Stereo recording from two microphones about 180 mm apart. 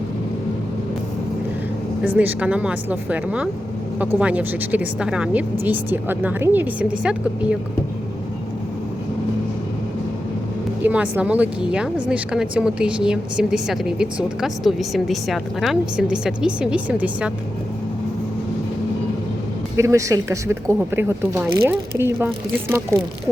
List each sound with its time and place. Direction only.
2.0 s speech: 10° right (ahead or behind)
10.8 s speech: 10° right (ahead or behind)
19.7 s speech: 15° right (ahead or behind)